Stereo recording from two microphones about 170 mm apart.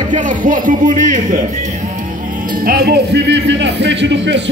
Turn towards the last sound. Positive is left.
turn(degrees=-90)